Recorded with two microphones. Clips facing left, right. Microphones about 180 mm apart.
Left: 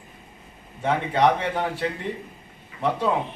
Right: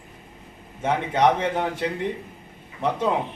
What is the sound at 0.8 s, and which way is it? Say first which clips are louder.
A man's voice: even; 20° right (ahead or behind).